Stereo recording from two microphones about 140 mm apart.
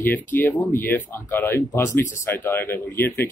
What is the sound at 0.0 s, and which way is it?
Speech, 10° left (ahead or behind).